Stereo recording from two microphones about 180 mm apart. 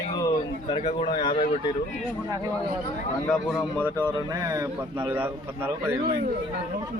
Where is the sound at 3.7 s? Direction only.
15° left (ahead or behind).